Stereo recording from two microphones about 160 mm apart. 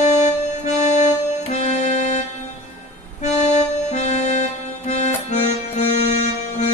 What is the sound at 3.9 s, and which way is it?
Accordion, 45° left (ahead or behind).